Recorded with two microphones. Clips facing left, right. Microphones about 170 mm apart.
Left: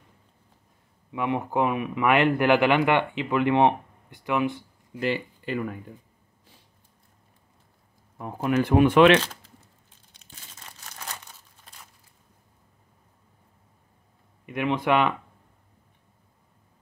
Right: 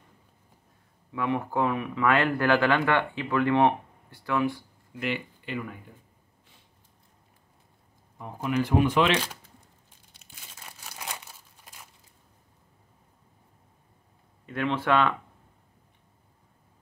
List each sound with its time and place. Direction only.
1.1 s speech: 20° left (ahead or behind)
5.0 s speech: 40° left (ahead or behind)
8.2 s speech: 50° left (ahead or behind)
8.6 s speech: 65° left (ahead or behind)
10.1 s crumpling: 10° right (ahead or behind)
14.4 s a man's voice: 15° left (ahead or behind)